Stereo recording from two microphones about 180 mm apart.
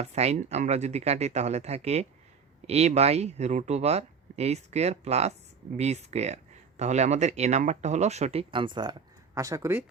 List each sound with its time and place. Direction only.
0.0 s speech: 35° right (ahead or behind); by 9.8 s 15° right (ahead or behind)